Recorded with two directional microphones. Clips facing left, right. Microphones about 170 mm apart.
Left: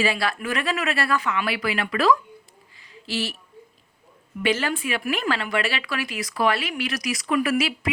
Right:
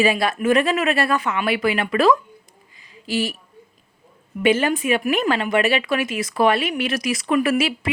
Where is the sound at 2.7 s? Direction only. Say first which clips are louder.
Right 5 dB; 15° right (ahead or behind).